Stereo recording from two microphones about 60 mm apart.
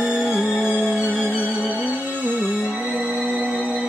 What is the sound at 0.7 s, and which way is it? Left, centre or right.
Music, right.